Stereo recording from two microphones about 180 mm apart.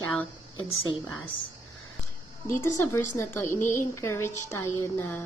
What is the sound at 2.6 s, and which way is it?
A woman's voice, 15° left (ahead or behind).